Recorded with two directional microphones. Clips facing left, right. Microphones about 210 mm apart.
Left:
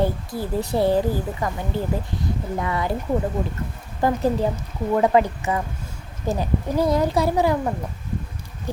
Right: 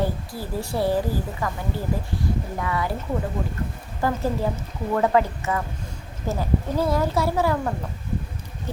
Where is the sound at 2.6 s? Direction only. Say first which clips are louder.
Left 2 dB; 25° left (ahead or behind).